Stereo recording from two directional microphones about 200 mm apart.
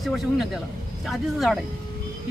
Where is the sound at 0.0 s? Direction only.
Centre (ahead or behind).